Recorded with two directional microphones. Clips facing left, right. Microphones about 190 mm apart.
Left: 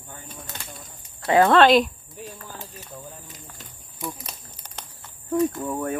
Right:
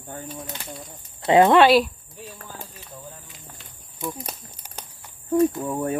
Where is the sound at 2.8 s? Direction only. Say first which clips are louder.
Left 1 dB; 40° left (ahead or behind).